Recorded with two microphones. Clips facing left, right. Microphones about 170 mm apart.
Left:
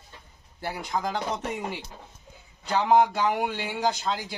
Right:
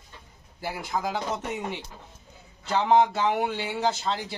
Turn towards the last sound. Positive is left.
turn(degrees=0)  # may be behind; listen again after turning